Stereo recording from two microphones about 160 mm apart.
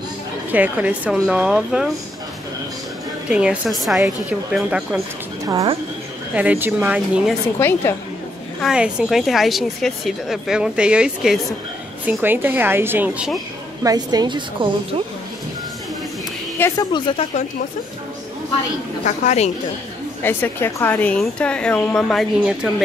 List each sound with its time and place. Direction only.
0.5 s a woman's voice: 10° right (ahead or behind)
3.3 s a woman's voice: 5° right (ahead or behind)
6.3 s speech: 10° right (ahead or behind)
7.5 s a woman's voice: 15° left (ahead or behind)
8.5 s a woman's voice: 5° right (ahead or behind)
13.8 s a woman's voice: 25° right (ahead or behind)
16.5 s a woman's voice: 15° left (ahead or behind)
16.9 s speech: 30° left (ahead or behind)
19.0 s speech: 45° left (ahead or behind)
20.2 s a woman's voice: 15° left (ahead or behind); by 22.7 s 5° right (ahead or behind)